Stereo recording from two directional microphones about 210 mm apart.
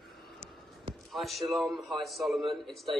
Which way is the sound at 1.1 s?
Centre (ahead or behind).